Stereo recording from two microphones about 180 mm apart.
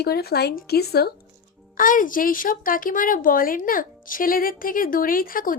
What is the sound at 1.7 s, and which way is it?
A woman's voice, 50° left (ahead or behind).